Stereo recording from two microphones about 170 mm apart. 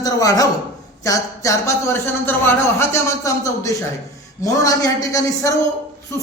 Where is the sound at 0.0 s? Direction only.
20° left (ahead or behind).